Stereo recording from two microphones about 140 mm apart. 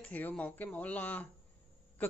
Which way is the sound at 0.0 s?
10° left (ahead or behind).